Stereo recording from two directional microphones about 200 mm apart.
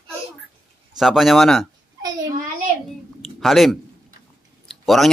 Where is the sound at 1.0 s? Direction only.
Centre (ahead or behind).